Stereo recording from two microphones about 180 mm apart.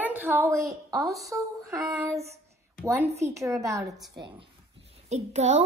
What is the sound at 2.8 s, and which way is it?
Speech, 10° right (ahead or behind).